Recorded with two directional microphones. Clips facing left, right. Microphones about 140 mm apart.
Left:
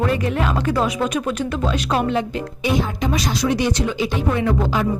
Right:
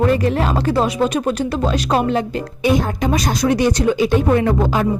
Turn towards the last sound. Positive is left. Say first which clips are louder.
# right 4 dB
turn(degrees=-50)  # may be behind; listen again after turning